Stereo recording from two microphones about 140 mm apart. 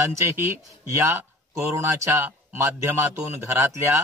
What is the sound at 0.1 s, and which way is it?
Speech, 20° right (ahead or behind).